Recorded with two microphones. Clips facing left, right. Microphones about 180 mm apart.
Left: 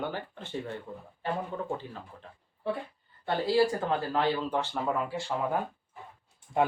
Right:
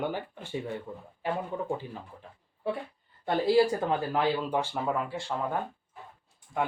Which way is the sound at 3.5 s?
15° right (ahead or behind).